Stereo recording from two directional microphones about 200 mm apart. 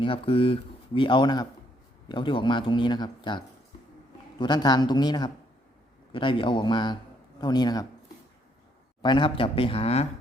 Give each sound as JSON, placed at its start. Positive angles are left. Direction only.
{"t": 0.0, "sound": "speech", "side_deg": 25}
{"t": 9.0, "sound": "speech", "side_deg": 25}